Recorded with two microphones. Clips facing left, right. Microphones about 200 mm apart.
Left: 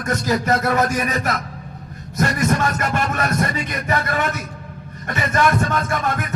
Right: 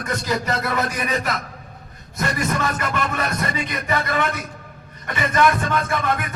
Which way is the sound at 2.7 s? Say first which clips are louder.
Left 2 dB; 45° left (ahead or behind).